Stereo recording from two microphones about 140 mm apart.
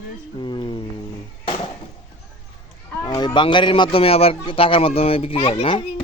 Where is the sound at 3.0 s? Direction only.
30° left (ahead or behind).